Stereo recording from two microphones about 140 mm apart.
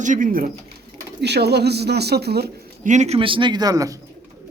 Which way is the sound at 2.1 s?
90° right.